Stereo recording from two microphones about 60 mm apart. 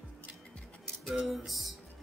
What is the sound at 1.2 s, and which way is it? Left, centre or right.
Music, centre.